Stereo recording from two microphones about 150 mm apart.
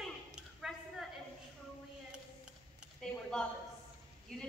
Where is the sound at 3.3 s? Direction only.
5° left (ahead or behind).